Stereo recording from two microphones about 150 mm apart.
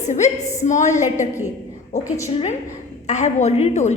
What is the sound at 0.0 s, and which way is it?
A woman's voice, 50° left (ahead or behind).